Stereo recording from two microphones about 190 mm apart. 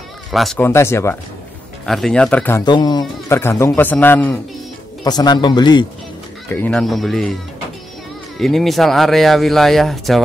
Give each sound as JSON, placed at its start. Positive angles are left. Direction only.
{"t": 0.3, "sound": "speech", "side_deg": 0}
{"t": 0.6, "sound": "a man's voice", "side_deg": 15}
{"t": 1.9, "sound": "speech", "side_deg": 0}
{"t": 2.6, "sound": "a man's voice", "side_deg": 20}
{"t": 5.0, "sound": "a man's voice", "side_deg": 20}
{"t": 6.5, "sound": "speech", "side_deg": 5}
{"t": 8.4, "sound": "speech", "side_deg": 0}